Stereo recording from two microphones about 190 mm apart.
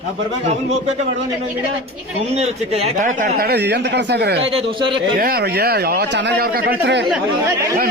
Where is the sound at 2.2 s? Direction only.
35° right (ahead or behind); by 4.5 s 60° right (ahead or behind).